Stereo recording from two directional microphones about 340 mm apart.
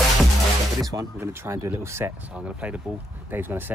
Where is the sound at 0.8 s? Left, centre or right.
Centre.